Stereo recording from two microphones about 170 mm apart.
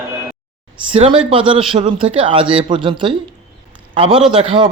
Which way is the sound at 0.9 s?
30° right (ahead or behind).